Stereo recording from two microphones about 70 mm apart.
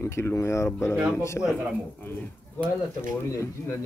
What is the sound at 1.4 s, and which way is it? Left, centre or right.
Speech, centre.